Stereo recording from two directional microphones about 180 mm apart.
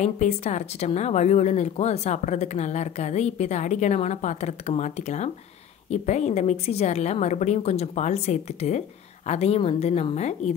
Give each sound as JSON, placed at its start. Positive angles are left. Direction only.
{"t": 0.0, "sound": "speech", "side_deg": 40}